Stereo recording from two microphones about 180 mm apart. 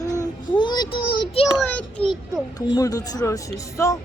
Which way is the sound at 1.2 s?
30° left (ahead or behind).